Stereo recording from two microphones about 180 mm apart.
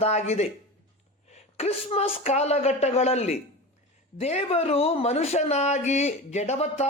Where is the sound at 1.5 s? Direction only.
35° left (ahead or behind).